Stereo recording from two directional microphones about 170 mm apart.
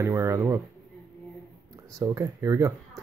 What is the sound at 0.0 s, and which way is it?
Speech, 15° right (ahead or behind).